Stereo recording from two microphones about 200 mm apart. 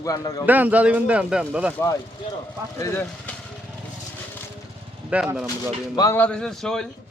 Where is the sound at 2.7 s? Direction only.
15° left (ahead or behind).